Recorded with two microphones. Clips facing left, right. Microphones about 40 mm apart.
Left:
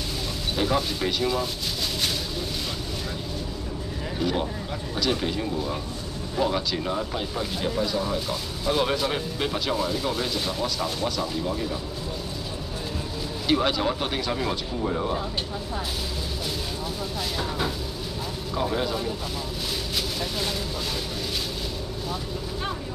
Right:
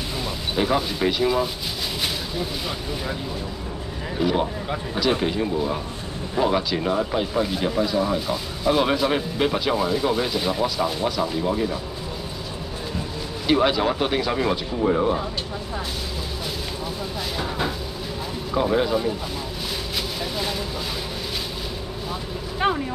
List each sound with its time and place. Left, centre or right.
0.6 s speech: centre
4.2 s speech: centre
13.5 s speech: centre
17.4 s vehicle: centre
18.5 s speech: centre
20.2 s a sound: centre